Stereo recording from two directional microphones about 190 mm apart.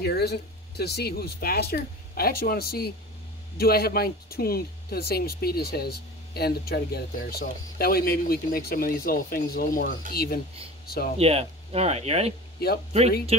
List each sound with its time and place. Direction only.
0.0 s speech: 60° left (ahead or behind)
11.1 s speech: 30° right (ahead or behind)
12.5 s speech: 55° left (ahead or behind)
13.3 s speech: 35° right (ahead or behind)